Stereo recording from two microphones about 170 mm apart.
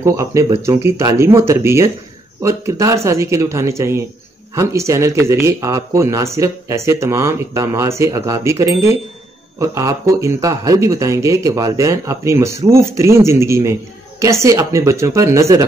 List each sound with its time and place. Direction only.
0.0 s speech: 15° right (ahead or behind)